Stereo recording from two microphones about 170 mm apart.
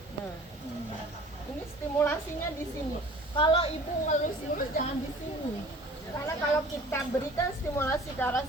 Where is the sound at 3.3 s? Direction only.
30° left (ahead or behind).